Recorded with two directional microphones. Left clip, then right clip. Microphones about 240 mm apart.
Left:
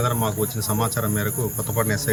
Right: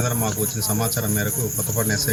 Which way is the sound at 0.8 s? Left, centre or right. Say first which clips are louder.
Left 2 dB; centre.